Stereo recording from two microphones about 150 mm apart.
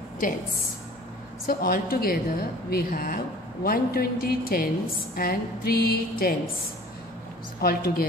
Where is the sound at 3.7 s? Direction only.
80° left.